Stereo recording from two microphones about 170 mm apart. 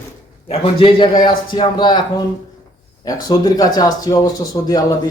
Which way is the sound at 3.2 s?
25° left (ahead or behind).